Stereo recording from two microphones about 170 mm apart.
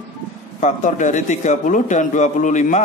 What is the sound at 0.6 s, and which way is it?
A man's voice, 45° left (ahead or behind).